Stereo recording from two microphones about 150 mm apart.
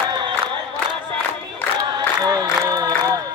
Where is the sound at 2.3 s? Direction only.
25° right (ahead or behind).